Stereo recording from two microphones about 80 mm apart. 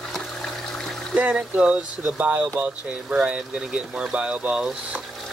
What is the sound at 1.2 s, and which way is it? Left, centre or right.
Speech, centre.